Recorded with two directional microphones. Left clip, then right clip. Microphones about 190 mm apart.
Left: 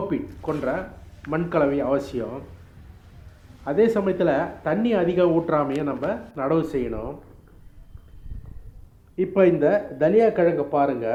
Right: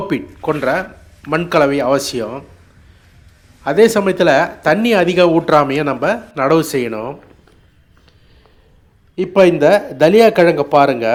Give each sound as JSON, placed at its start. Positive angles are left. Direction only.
{"t": 0.1, "sound": "speech", "side_deg": -35}
{"t": 3.6, "sound": "speech", "side_deg": -35}
{"t": 9.1, "sound": "a man's voice", "side_deg": -25}